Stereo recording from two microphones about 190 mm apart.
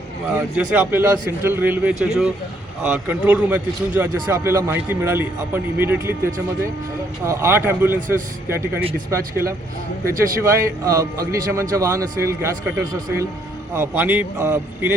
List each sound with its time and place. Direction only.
0.3 s a man's voice: 10° right (ahead or behind)